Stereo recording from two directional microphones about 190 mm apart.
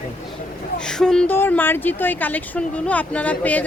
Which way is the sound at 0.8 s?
5° left (ahead or behind).